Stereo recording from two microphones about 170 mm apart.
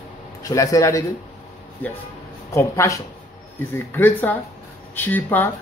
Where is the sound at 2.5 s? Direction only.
20° left (ahead or behind).